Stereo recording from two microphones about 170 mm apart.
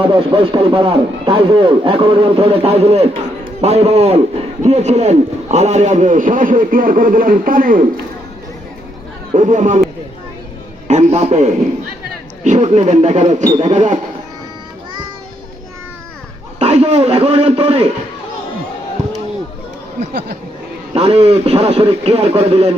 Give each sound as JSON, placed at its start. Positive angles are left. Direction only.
{"t": 0.1, "sound": "a man's voice", "side_deg": -30}
{"t": 9.3, "sound": "a man's voice", "side_deg": -45}
{"t": 10.8, "sound": "a man's voice", "side_deg": -40}
{"t": 16.6, "sound": "a man's voice", "side_deg": -40}
{"t": 20.9, "sound": "a man's voice", "side_deg": -35}